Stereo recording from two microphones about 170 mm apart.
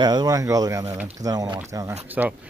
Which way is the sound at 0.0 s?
25° right (ahead or behind).